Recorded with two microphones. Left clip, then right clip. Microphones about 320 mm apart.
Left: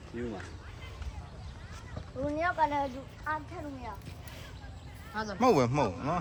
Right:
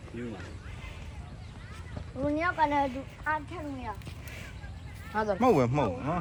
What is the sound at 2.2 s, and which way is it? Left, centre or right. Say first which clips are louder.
A woman's voice: right 2 dB; right.